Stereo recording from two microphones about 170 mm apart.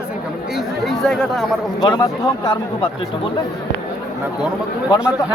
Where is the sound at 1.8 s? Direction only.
25° left (ahead or behind).